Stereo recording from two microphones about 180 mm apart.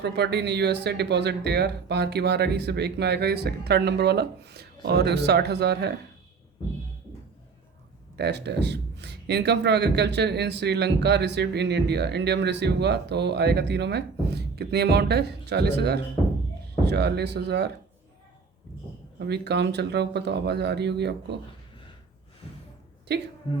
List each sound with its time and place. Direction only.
0.0 s speech: 65° right (ahead or behind)
8.1 s speech: 65° right (ahead or behind)
19.2 s speech: 65° right (ahead or behind)
23.1 s speech: 65° right (ahead or behind)
23.5 s speech: 35° left (ahead or behind)